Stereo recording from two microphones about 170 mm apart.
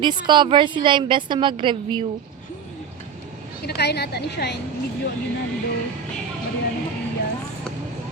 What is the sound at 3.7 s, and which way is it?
Speech, 70° left (ahead or behind).